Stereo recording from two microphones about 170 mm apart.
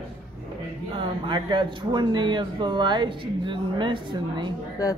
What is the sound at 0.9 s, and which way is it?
Speech, 30° right (ahead or behind).